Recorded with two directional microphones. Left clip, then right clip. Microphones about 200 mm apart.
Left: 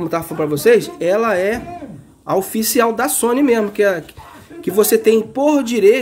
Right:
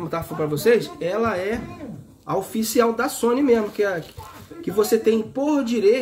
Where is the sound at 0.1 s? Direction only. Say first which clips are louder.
Left 3 dB; 35° left (ahead or behind).